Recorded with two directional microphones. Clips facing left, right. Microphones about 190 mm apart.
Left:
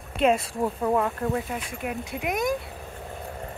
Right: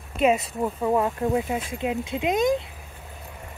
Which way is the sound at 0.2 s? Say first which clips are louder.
Right 1 dB; 5° right (ahead or behind).